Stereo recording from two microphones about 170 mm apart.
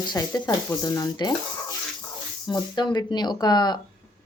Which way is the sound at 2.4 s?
25° left (ahead or behind).